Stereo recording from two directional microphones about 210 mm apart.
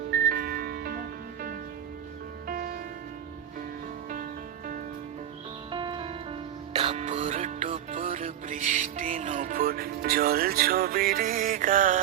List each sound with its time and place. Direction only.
0.3 s music: 45° right (ahead or behind)
5.7 s music: 20° right (ahead or behind); by 11.9 s 40° right (ahead or behind)